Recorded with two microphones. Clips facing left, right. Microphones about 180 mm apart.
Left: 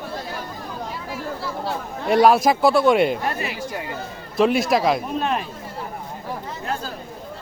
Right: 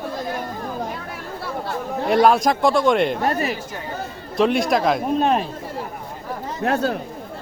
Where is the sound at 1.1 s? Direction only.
60° right (ahead or behind).